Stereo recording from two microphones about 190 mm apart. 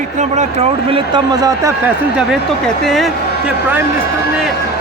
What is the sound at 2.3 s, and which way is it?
Speech, centre (ahead or behind).